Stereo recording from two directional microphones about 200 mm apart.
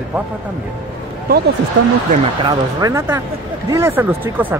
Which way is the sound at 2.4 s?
15° right (ahead or behind).